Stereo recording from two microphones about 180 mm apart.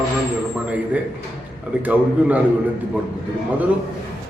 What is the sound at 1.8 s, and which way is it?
Speech, 10° right (ahead or behind).